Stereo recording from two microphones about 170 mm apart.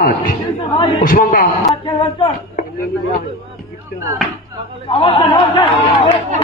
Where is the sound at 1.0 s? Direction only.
55° left (ahead or behind).